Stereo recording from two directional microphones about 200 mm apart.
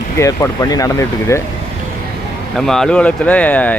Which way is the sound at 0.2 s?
15° left (ahead or behind).